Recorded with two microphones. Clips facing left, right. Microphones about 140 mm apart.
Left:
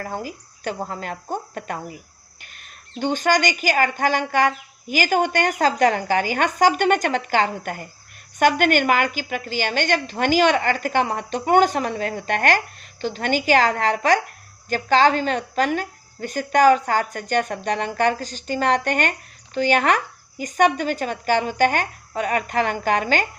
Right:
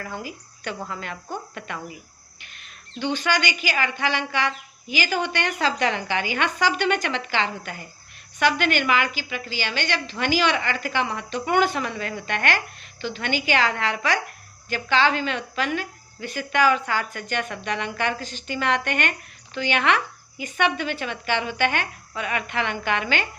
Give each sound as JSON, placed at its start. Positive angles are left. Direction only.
{"t": 0.0, "sound": "a woman's voice", "side_deg": 45}